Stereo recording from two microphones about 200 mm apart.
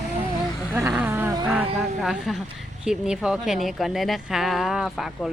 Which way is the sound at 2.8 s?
5° right (ahead or behind).